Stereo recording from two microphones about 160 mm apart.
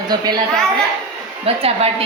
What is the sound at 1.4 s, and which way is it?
Speech, 35° right (ahead or behind).